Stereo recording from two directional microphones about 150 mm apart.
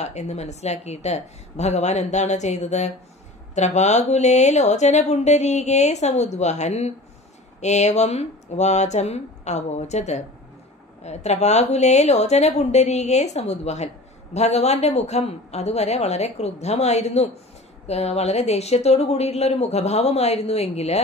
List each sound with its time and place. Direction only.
0.0 s speech: 50° left (ahead or behind)